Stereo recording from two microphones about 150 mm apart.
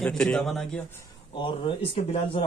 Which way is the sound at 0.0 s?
5° left (ahead or behind).